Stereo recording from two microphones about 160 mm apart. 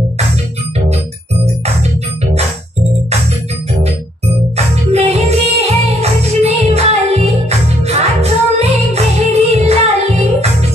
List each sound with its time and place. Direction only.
4.9 s music: 40° right (ahead or behind)